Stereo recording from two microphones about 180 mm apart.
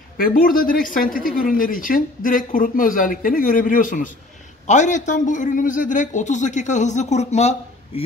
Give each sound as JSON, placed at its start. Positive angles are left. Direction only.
{"t": 0.2, "sound": "a man's voice", "side_deg": 50}